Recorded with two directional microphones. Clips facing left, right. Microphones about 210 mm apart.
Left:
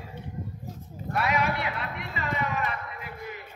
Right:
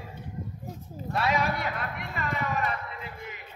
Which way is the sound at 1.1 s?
30° right (ahead or behind).